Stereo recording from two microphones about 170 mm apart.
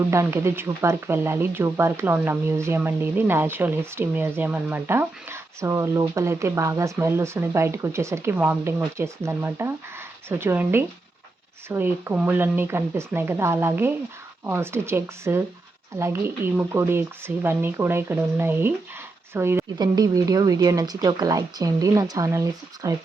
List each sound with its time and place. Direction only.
0.1 s speech: 15° right (ahead or behind)